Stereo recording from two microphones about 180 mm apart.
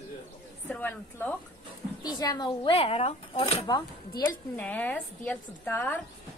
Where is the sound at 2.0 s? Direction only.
20° left (ahead or behind).